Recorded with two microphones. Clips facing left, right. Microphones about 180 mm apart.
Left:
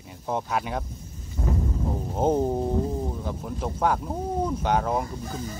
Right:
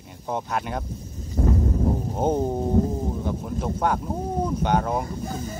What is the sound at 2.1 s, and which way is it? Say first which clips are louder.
Speech: left 4 dB; centre (ahead or behind).